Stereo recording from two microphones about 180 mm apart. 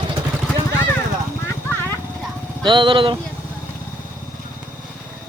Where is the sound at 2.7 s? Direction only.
25° right (ahead or behind).